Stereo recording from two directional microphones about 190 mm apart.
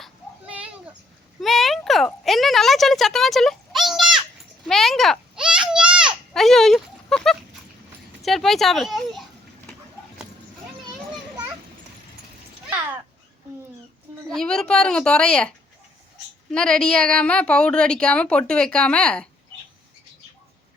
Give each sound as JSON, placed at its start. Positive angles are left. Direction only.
{"t": 1.4, "sound": "a sound", "side_deg": 0}
{"t": 8.2, "sound": "a woman's voice", "side_deg": 0}
{"t": 14.3, "sound": "a woman's voice", "side_deg": 5}